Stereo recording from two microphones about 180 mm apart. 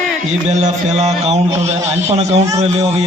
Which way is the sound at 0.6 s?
40° right (ahead or behind).